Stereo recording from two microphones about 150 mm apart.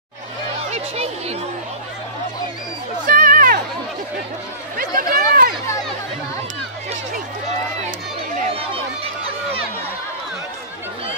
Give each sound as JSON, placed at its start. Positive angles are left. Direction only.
{"t": 0.7, "sound": "speech", "side_deg": -45}
{"t": 3.1, "sound": "a sound", "side_deg": -65}
{"t": 4.7, "sound": "chatter", "side_deg": -75}
{"t": 8.5, "sound": "run", "side_deg": -40}